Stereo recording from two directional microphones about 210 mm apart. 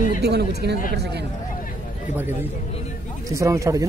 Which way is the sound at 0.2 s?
50° right (ahead or behind).